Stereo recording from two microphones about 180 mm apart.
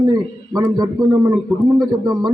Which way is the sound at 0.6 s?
20° right (ahead or behind).